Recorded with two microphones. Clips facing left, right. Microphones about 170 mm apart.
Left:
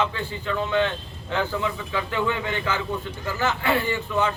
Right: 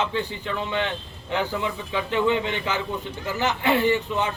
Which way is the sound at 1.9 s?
20° right (ahead or behind).